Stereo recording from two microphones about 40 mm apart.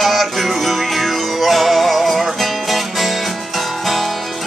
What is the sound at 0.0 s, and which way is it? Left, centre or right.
Music, centre.